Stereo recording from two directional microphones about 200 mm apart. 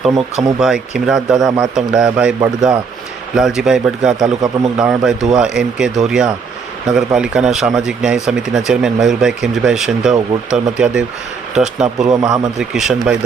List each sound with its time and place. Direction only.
0.6 s speech: 5° right (ahead or behind)
4.4 s a man's voice: 20° right (ahead or behind)
4.8 s speech: 5° right (ahead or behind)
12.0 s a man's voice: 20° right (ahead or behind)
12.3 s speech: centre (ahead or behind)